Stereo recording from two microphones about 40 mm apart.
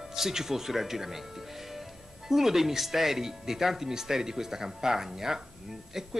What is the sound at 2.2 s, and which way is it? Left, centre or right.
Speech, centre.